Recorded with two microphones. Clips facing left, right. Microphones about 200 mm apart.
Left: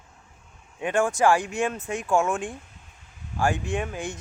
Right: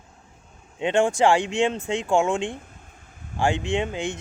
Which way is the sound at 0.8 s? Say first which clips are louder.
Right 2 dB; 25° right (ahead or behind).